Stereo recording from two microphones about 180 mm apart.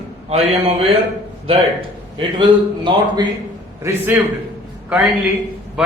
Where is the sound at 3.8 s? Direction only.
10° right (ahead or behind).